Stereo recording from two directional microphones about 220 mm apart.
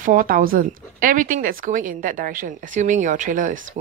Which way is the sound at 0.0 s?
40° right (ahead or behind).